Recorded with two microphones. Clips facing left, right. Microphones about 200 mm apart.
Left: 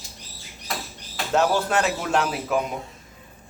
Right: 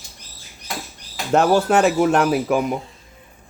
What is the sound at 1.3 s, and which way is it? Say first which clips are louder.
Speech: right 5 dB; 65° right (ahead or behind).